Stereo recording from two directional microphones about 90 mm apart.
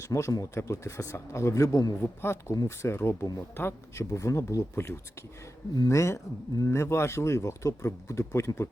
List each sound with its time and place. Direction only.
0.0 s speech: 35° left (ahead or behind)
2.0 s speech: 25° left (ahead or behind)